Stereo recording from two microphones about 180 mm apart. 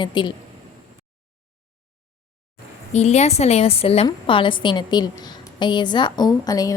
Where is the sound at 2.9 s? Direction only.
40° left (ahead or behind); by 6.7 s 20° left (ahead or behind).